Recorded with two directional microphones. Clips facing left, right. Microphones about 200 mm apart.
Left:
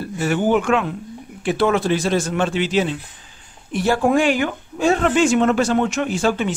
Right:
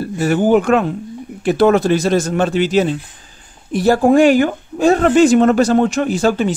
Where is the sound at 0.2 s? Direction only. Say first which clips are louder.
Right 5 dB; 40° right (ahead or behind).